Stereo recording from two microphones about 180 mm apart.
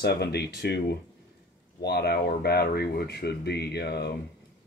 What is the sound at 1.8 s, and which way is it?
Speech, 65° left (ahead or behind).